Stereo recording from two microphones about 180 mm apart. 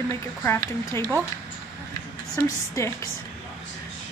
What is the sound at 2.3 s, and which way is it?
Speech, 15° left (ahead or behind).